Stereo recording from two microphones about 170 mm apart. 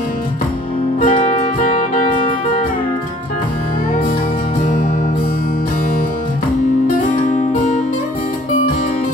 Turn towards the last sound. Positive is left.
turn(degrees=45)  # may be behind; listen again after turning